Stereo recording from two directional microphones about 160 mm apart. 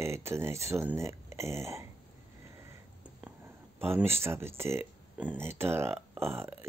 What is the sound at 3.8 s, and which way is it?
Speech, 15° right (ahead or behind).